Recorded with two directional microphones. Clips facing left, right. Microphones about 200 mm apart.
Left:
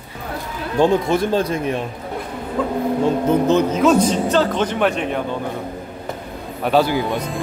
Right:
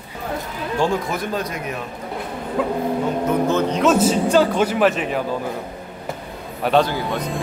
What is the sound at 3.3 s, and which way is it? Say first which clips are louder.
Speech: left 3 dB; 20° left (ahead or behind).